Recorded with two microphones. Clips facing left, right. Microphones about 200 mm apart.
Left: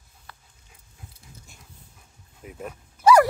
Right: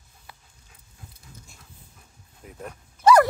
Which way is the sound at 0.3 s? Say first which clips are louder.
Even; 10° right (ahead or behind).